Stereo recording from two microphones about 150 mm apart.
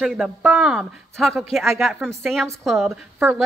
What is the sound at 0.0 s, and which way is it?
Speech, 5° right (ahead or behind).